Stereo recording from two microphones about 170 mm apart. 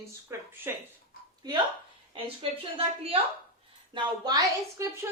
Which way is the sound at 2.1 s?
35° right (ahead or behind).